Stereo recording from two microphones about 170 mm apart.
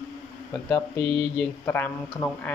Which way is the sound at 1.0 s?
10° left (ahead or behind).